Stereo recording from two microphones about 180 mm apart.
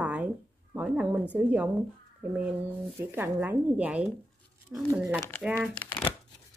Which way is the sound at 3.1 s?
10° right (ahead or behind).